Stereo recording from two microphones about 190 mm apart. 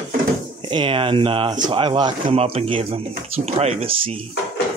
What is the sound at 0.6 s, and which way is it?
Speech, 25° right (ahead or behind).